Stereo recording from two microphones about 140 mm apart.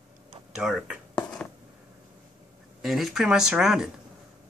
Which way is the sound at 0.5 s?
5° right (ahead or behind).